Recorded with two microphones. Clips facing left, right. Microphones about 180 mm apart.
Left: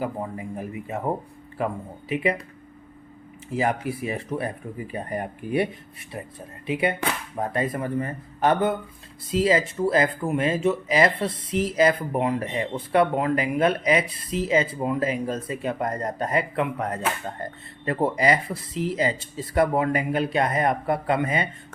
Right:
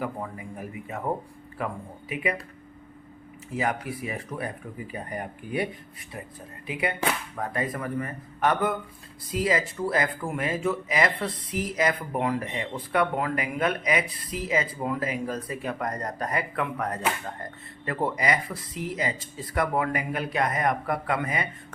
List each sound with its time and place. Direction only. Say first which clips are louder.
0.0 s speech: left 3 dB; 25° left (ahead or behind)
3.5 s speech: left 4 dB; 30° left (ahead or behind)
6.7 s speech: left 3 dB; 25° left (ahead or behind)